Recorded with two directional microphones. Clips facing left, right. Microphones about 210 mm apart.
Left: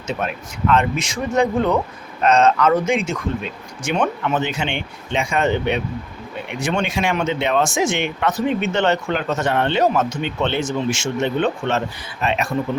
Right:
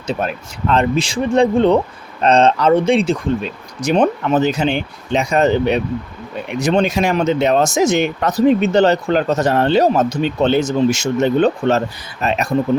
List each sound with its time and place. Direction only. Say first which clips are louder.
0.1 s speech: right 4 dB; 35° right (ahead or behind)